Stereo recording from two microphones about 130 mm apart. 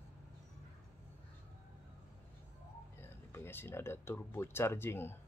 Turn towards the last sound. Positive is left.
turn(degrees=20)  # may be behind; listen again after turning